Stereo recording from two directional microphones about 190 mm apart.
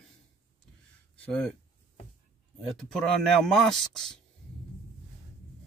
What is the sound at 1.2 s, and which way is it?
Speech, 5° left (ahead or behind).